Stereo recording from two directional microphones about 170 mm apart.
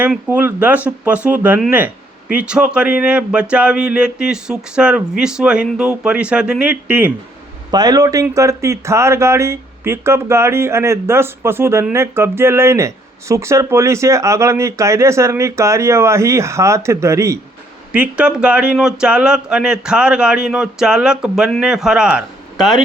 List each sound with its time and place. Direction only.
0.0 s speech: 10° right (ahead or behind)
7.7 s speech: 25° right (ahead or behind); by 22.8 s centre (ahead or behind)